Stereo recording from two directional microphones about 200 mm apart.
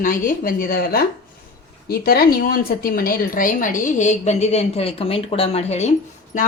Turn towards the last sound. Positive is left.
turn(degrees=35)  # may be behind; listen again after turning